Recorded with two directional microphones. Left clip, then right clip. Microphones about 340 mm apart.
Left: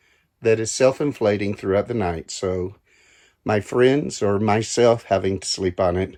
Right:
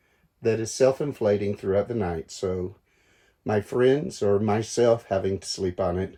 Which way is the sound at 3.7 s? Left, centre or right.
Centre.